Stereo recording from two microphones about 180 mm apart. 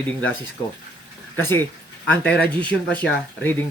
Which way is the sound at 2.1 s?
10° left (ahead or behind).